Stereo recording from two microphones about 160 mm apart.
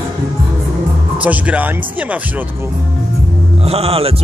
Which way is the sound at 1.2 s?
10° right (ahead or behind).